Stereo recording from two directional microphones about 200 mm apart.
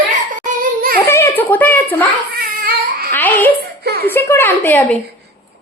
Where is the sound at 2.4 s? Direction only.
50° right (ahead or behind).